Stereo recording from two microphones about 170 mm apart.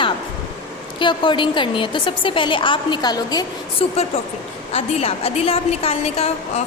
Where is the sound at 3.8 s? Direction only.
35° left (ahead or behind).